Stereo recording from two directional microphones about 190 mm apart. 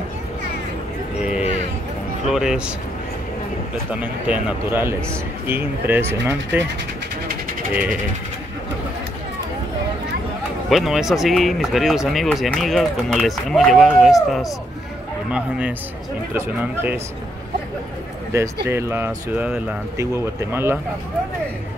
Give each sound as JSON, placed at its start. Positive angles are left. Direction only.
{"t": 1.2, "sound": "a sound", "side_deg": -5}
{"t": 2.2, "sound": "speech", "side_deg": -5}
{"t": 4.0, "sound": "speech", "side_deg": -5}
{"t": 10.7, "sound": "speech", "side_deg": 0}
{"t": 15.3, "sound": "speech", "side_deg": -5}
{"t": 18.3, "sound": "speech", "side_deg": -15}